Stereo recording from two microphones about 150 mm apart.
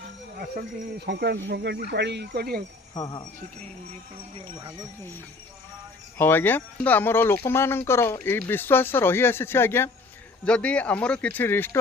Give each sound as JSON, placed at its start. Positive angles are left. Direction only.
{"t": 0.3, "sound": "speech", "side_deg": -80}
{"t": 2.9, "sound": "speech", "side_deg": 25}
{"t": 6.1, "sound": "speech", "side_deg": 15}